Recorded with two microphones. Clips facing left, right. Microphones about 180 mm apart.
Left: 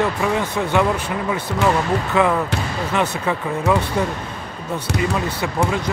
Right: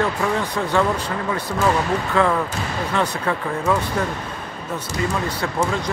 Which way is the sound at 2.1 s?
15° left (ahead or behind).